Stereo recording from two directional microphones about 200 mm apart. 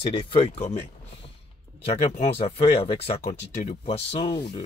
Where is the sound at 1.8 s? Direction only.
30° left (ahead or behind).